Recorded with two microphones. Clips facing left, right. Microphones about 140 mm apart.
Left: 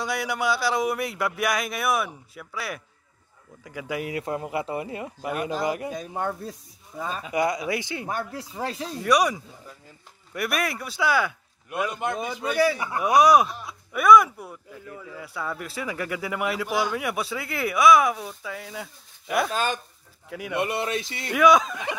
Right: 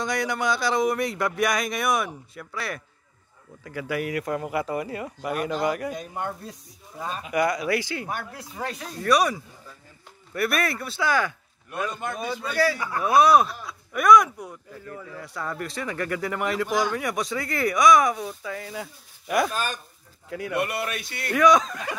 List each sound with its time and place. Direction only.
0.0 s a man's voice: 5° left (ahead or behind); by 5.5 s 25° left (ahead or behind)
7.3 s a man's voice: 20° left (ahead or behind)
8.2 s speech: 30° left (ahead or behind)
9.0 s a man's voice: 15° left (ahead or behind)
13.9 s speech: 5° left (ahead or behind)
19.5 s speech: 90° left
20.2 s speech: 10° left (ahead or behind)
20.5 s a man's voice: 20° left (ahead or behind)
21.4 s speech: 5° left (ahead or behind)